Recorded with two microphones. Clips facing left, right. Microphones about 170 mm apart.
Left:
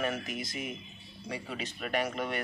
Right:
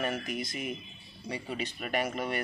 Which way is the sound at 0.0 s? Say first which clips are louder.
Right 1 dB; centre (ahead or behind).